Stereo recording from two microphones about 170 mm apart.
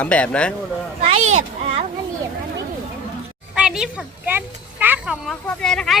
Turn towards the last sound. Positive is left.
turn(degrees=5)  # may be behind; listen again after turning